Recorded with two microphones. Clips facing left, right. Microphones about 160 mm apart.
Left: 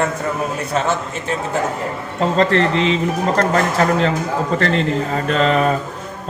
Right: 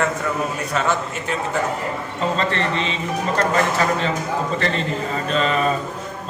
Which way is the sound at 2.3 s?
75° left (ahead or behind).